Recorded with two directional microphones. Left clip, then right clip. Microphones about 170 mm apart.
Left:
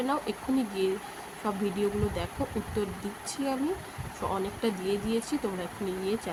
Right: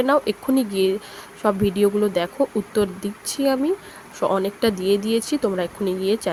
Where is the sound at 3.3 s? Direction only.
50° right (ahead or behind).